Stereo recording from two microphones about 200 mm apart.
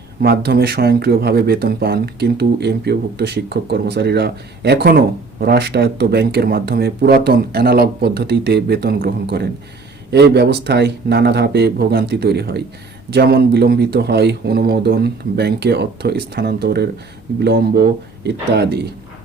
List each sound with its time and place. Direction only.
0.2 s speech: 50° right (ahead or behind)